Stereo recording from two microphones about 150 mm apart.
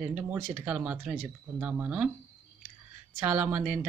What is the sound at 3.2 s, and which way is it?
Speech, 15° right (ahead or behind).